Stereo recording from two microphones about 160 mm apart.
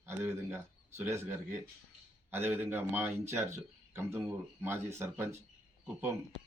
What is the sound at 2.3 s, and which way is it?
Speech, 15° right (ahead or behind).